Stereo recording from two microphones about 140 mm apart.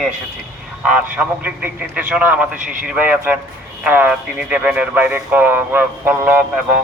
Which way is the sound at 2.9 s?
10° right (ahead or behind).